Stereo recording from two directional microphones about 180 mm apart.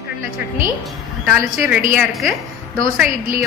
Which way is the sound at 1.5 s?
5° right (ahead or behind).